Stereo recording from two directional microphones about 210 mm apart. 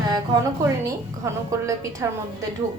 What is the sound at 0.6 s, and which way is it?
A woman's voice, 15° right (ahead or behind).